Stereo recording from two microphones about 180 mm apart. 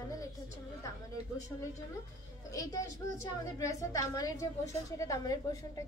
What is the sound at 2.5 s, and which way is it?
Speech, 20° left (ahead or behind).